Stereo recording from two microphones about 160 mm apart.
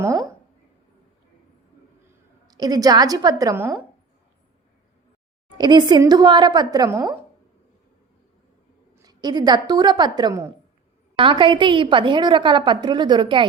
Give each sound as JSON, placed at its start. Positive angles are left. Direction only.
{"t": 2.5, "sound": "a woman's voice", "side_deg": -25}
{"t": 5.5, "sound": "a woman's voice", "side_deg": -25}
{"t": 9.0, "sound": "a woman's voice", "side_deg": -25}